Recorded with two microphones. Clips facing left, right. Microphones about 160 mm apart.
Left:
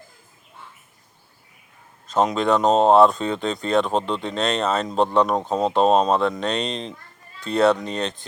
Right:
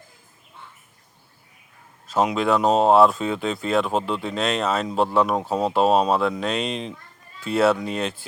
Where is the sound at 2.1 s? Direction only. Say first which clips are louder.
Left 1 dB; 5° right (ahead or behind).